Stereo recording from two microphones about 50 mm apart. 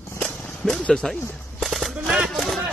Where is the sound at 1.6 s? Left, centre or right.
Centre.